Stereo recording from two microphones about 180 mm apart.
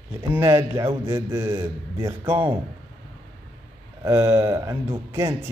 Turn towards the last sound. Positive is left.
turn(degrees=-15)  # may be behind; listen again after turning